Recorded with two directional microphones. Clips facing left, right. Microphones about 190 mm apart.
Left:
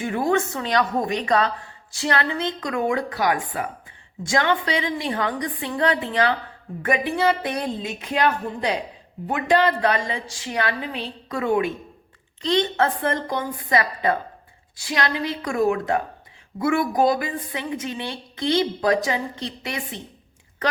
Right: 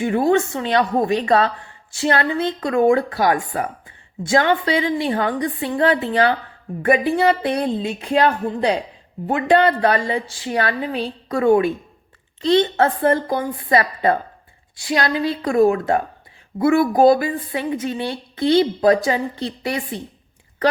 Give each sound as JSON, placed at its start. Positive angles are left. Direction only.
{"t": 0.0, "sound": "a woman's voice", "side_deg": -30}